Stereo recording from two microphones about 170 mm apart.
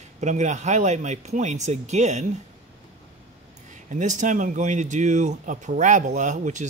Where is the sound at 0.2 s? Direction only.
45° right (ahead or behind).